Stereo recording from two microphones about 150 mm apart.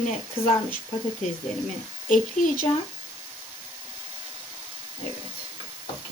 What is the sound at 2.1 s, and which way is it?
Speech, 65° left (ahead or behind).